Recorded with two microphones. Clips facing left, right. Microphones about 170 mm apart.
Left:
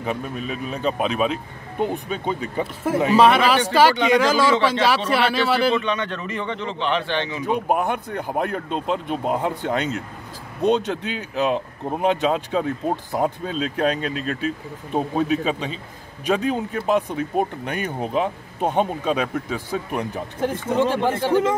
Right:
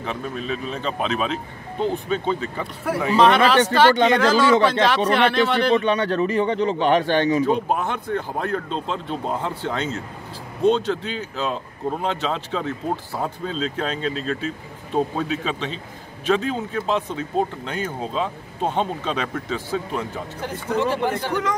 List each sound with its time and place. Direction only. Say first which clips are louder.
0.0 s speech: left 1 dB; 10° left (ahead or behind)
5.8 s a man's voice: right 5 dB; 35° right (ahead or behind)
7.4 s speech: even; 10° left (ahead or behind)
21.1 s speech: left 5 dB; 25° left (ahead or behind)